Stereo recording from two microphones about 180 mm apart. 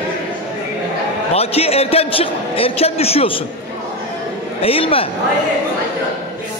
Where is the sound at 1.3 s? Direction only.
35° left (ahead or behind).